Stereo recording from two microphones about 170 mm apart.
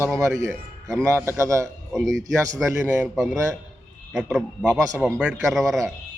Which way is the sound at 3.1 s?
Centre (ahead or behind).